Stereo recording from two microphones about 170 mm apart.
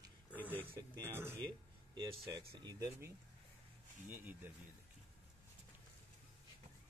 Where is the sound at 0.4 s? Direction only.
10° left (ahead or behind).